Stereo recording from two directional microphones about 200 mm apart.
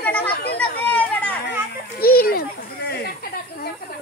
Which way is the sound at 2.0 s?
50° left (ahead or behind).